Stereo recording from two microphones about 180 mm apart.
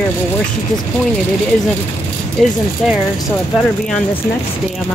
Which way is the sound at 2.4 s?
Centre (ahead or behind).